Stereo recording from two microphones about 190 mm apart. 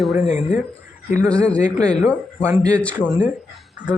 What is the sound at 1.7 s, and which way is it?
Speech, 20° right (ahead or behind).